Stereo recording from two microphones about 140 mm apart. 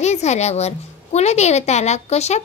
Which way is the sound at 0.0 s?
55° left (ahead or behind).